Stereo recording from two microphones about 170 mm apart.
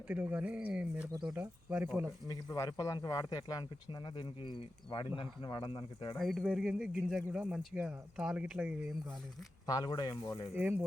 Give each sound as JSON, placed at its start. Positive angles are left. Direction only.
{"t": 0.1, "sound": "speech", "side_deg": -10}
{"t": 2.2, "sound": "speech", "side_deg": 20}
{"t": 6.1, "sound": "speech", "side_deg": 0}
{"t": 9.6, "sound": "speech", "side_deg": 25}
{"t": 10.5, "sound": "speech", "side_deg": -10}